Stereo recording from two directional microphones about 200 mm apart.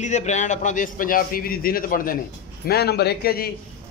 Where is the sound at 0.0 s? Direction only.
35° left (ahead or behind).